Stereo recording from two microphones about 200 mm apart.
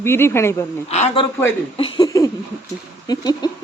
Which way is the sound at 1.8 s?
25° left (ahead or behind).